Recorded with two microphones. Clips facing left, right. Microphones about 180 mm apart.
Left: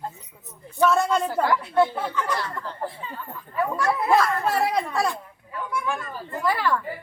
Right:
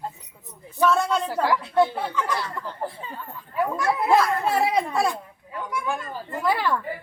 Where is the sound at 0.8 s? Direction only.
Centre (ahead or behind).